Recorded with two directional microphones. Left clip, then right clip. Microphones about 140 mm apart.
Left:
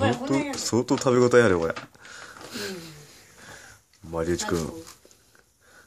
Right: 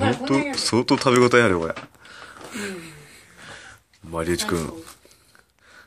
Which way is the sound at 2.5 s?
25° left (ahead or behind).